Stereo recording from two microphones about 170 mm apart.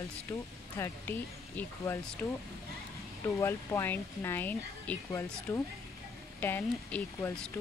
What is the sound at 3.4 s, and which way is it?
Speech, 15° left (ahead or behind).